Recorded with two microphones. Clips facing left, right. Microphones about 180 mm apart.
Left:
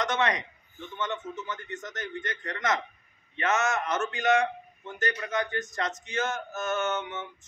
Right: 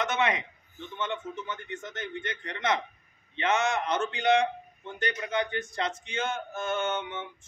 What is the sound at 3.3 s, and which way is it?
Speech, 15° right (ahead or behind).